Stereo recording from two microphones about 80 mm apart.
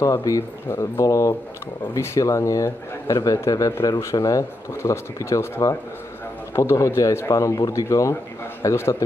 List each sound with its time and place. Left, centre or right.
0.0 s speech: left
6.5 s speech: left